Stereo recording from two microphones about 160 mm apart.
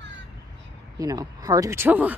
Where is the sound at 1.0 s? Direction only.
20° right (ahead or behind).